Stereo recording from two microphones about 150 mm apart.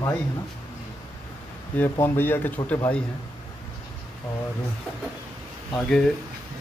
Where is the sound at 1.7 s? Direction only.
15° left (ahead or behind).